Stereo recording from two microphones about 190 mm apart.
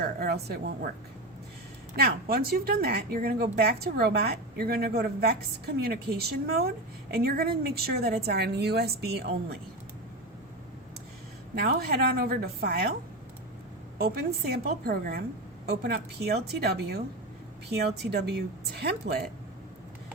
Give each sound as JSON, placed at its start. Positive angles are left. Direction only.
{"t": 0.0, "sound": "speech", "side_deg": -55}
{"t": 2.0, "sound": "speech", "side_deg": -55}
{"t": 11.5, "sound": "speech", "side_deg": -55}
{"t": 14.0, "sound": "speech", "side_deg": -55}